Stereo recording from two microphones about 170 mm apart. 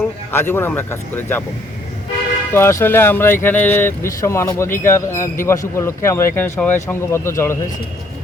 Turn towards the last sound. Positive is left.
turn(degrees=15)  # may be behind; listen again after turning